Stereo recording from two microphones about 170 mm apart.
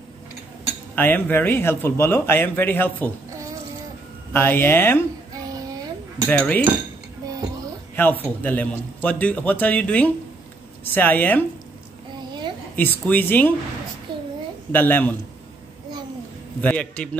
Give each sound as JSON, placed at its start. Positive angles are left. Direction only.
{"t": 0.9, "sound": "speech", "side_deg": 10}
{"t": 4.3, "sound": "speech", "side_deg": 10}
{"t": 6.2, "sound": "speech", "side_deg": 5}
{"t": 7.9, "sound": "speech", "side_deg": 10}
{"t": 12.7, "sound": "speech", "side_deg": 10}
{"t": 14.1, "sound": "a sound", "side_deg": -30}
{"t": 14.7, "sound": "speech", "side_deg": 10}
{"t": 16.6, "sound": "speech", "side_deg": 5}